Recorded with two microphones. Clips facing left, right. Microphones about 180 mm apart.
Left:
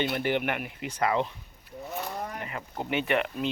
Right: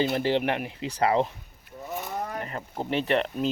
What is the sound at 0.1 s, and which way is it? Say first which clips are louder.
Speech: right 3 dB; 30° right (ahead or behind).